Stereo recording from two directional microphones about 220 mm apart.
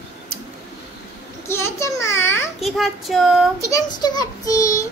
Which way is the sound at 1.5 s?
10° left (ahead or behind).